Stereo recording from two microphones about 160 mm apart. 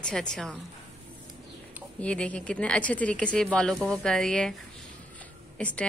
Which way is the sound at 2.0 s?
10° left (ahead or behind).